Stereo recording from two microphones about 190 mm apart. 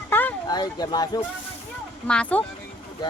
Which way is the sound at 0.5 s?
20° left (ahead or behind).